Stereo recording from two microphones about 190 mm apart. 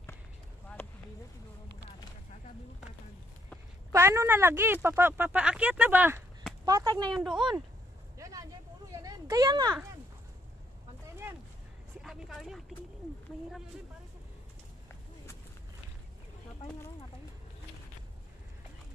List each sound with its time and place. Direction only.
3.9 s speech: 15° right (ahead or behind)
6.6 s speech: 20° right (ahead or behind)
7.2 s speech: centre (ahead or behind)
8.2 s vehicle: 15° right (ahead or behind)
8.9 s a sound: 20° right (ahead or behind)
12.0 s speech: centre (ahead or behind)